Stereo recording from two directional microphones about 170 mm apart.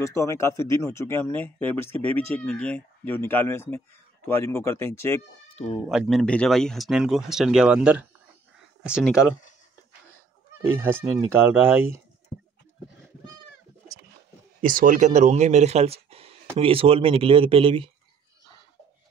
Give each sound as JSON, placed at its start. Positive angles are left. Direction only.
{"t": 0.0, "sound": "speech", "side_deg": 15}
{"t": 5.9, "sound": "speech", "side_deg": 0}
{"t": 10.8, "sound": "speech", "side_deg": -10}
{"t": 14.6, "sound": "speech", "side_deg": -55}